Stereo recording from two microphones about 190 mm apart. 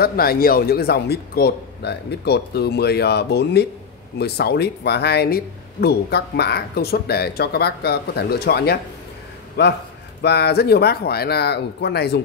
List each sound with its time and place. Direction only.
0.0 s speech: 55° left (ahead or behind)